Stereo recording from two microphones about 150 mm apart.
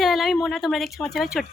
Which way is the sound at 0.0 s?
Centre (ahead or behind).